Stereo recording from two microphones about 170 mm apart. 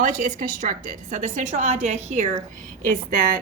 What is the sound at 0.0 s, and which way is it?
A woman's voice, 50° right (ahead or behind).